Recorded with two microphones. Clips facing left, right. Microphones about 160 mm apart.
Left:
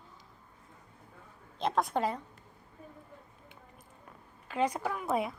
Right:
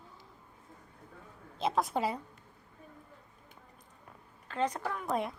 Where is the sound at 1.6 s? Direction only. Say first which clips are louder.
Left 1 dB; 5° right (ahead or behind).